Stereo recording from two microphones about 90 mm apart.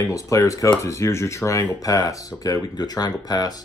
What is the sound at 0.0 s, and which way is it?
Speech, 40° left (ahead or behind).